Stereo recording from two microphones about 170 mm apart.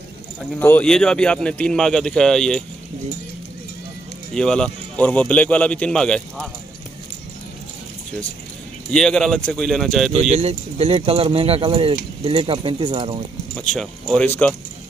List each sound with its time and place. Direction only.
0.6 s a man's voice: 10° left (ahead or behind)
4.3 s speech: 5° left (ahead or behind)
8.9 s a man's voice: 5° left (ahead or behind)
10.3 s speech: 35° right (ahead or behind)
13.6 s a man's voice: centre (ahead or behind)